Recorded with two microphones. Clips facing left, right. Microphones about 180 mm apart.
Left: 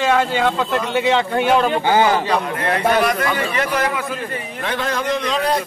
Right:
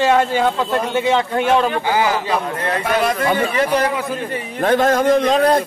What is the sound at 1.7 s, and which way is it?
Speech, 25° left (ahead or behind).